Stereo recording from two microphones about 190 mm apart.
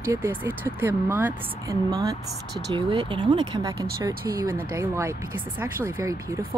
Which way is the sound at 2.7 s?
25° right (ahead or behind).